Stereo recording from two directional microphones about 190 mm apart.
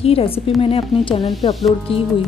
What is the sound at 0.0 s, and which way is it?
Speech, 30° left (ahead or behind).